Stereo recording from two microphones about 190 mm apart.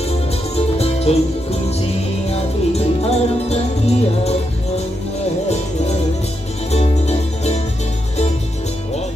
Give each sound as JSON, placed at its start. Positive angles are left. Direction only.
{"t": 0.6, "sound": "music", "side_deg": 30}
{"t": 6.7, "sound": "music", "side_deg": 35}